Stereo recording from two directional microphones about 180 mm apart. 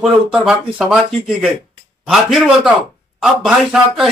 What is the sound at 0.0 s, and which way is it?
A man's voice, centre (ahead or behind).